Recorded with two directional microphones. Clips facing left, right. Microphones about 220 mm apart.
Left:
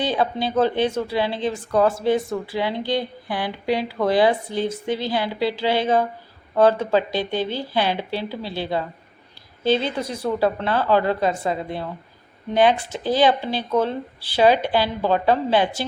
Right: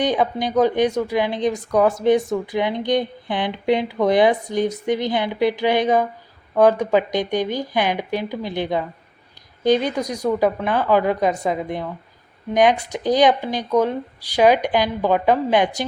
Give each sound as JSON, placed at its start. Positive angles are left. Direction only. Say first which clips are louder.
{"t": 0.0, "sound": "speech", "louder": "right 2 dB", "side_deg": -15}
{"t": 12.9, "sound": "speech", "louder": "right 2 dB", "side_deg": -15}